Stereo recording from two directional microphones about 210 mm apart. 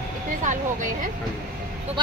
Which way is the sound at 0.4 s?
40° right (ahead or behind).